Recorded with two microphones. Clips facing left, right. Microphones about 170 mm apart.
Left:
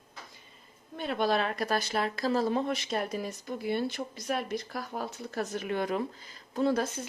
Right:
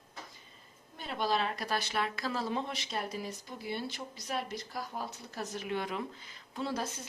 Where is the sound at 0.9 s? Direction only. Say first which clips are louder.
Left 4 dB; 60° left (ahead or behind).